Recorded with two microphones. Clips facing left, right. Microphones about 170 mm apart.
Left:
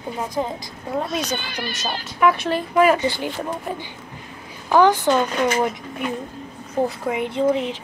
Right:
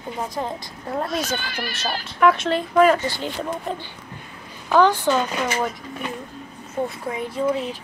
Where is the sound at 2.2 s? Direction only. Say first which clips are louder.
Right 1 dB; centre (ahead or behind).